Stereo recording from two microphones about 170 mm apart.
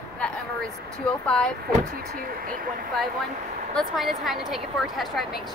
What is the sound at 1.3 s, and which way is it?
Speech, 5° left (ahead or behind).